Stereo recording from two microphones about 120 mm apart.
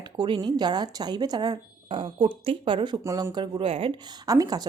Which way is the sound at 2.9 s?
30° right (ahead or behind).